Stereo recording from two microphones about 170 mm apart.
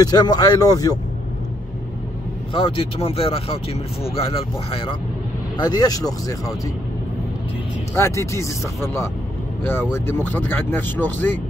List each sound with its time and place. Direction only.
0.0 s speech: 25° left (ahead or behind)
2.5 s speech: 30° left (ahead or behind)
7.9 s speech: 15° left (ahead or behind)